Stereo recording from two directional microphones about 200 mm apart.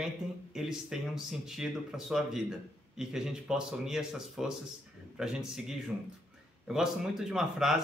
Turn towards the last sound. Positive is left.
turn(degrees=0)  # may be behind; listen again after turning